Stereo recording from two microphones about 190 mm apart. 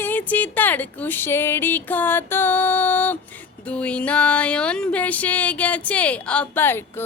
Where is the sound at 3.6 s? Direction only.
5° left (ahead or behind).